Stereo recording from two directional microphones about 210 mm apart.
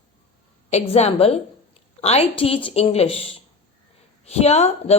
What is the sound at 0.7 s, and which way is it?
A woman's voice, 30° left (ahead or behind).